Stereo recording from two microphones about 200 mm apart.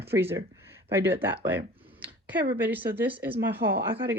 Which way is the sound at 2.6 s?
10° right (ahead or behind).